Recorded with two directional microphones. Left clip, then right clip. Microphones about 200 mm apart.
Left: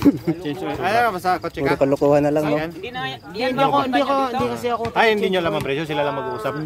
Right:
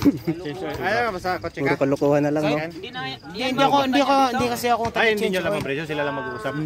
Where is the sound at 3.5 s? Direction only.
50° right (ahead or behind).